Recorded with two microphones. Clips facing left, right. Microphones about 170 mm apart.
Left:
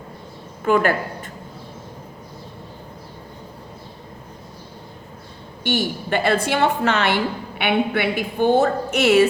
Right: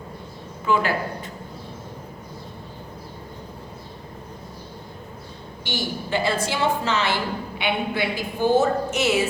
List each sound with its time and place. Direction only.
0.6 s a woman's voice: 55° left (ahead or behind)
5.6 s a woman's voice: 60° left (ahead or behind)